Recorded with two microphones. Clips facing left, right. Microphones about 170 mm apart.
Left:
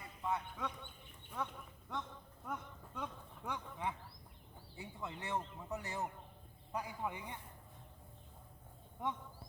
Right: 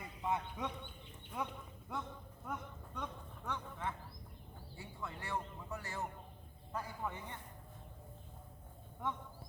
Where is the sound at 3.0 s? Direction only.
10° left (ahead or behind).